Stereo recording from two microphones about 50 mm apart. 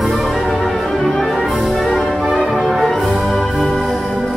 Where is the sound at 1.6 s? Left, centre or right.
Centre.